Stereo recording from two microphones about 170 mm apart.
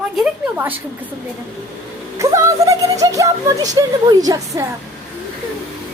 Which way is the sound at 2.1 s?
20° right (ahead or behind).